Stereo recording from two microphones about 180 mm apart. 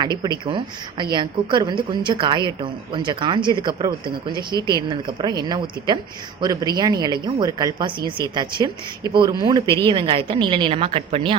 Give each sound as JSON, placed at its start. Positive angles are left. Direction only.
{"t": 0.0, "sound": "a woman's voice", "side_deg": -25}